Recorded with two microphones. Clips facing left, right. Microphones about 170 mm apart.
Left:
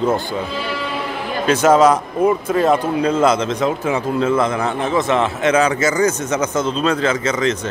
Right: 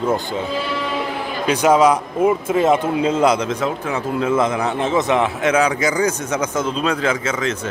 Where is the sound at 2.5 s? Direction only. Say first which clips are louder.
Even; 20° right (ahead or behind).